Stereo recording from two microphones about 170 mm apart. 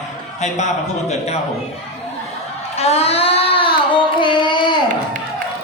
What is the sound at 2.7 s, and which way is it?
Child singing, 35° left (ahead or behind).